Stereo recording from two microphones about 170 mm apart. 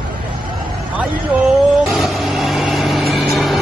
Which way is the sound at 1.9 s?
Centre (ahead or behind).